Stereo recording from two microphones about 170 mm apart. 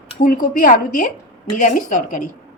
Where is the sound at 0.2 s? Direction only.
55° left (ahead or behind).